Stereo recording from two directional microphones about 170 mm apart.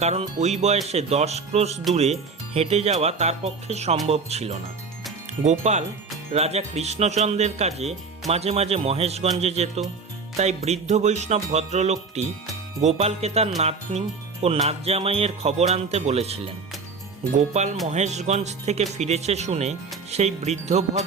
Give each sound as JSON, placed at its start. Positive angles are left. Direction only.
{"t": 0.0, "sound": "speech", "side_deg": -40}